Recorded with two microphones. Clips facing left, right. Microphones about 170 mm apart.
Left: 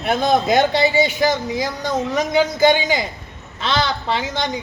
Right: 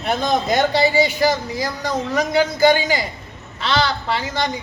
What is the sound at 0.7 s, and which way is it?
A man's voice, 20° left (ahead or behind).